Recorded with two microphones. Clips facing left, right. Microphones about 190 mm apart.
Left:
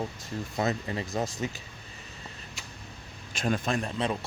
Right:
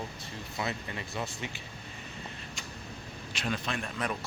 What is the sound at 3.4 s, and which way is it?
Speech, 45° left (ahead or behind).